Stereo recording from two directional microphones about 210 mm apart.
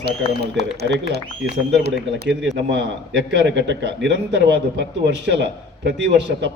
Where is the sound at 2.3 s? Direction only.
55° right (ahead or behind).